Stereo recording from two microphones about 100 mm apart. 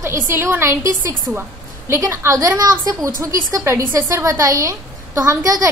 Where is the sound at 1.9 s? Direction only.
30° right (ahead or behind).